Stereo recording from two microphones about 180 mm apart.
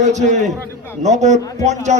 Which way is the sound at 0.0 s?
40° right (ahead or behind).